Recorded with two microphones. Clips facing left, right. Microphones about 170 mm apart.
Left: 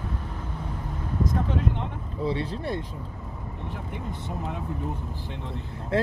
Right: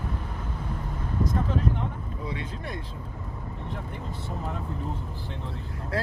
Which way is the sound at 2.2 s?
30° left (ahead or behind).